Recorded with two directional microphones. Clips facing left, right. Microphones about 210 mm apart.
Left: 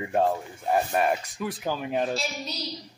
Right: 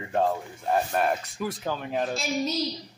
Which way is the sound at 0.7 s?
5° left (ahead or behind).